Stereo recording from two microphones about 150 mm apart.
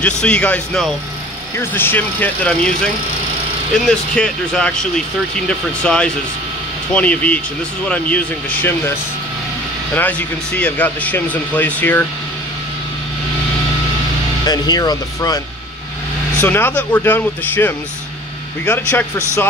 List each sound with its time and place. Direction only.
0.0 s speech: 5° left (ahead or behind)
9.9 s speech: 10° left (ahead or behind)
14.4 s speech: 25° left (ahead or behind)
16.3 s speech: 15° left (ahead or behind)